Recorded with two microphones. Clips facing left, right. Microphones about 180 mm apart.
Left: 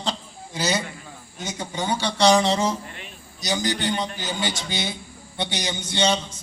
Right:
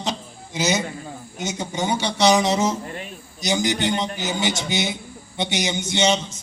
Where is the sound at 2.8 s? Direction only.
45° right (ahead or behind).